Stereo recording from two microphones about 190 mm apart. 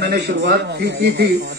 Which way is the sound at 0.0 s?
60° right (ahead or behind).